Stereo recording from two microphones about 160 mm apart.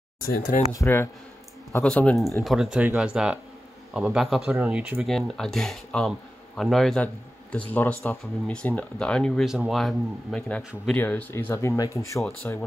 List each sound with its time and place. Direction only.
0.2 s speech: 55° left (ahead or behind)
0.7 s speech: 15° left (ahead or behind)
7.7 s speech: 15° left (ahead or behind)